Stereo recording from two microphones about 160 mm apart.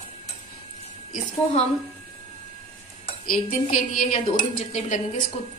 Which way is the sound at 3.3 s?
55° left (ahead or behind).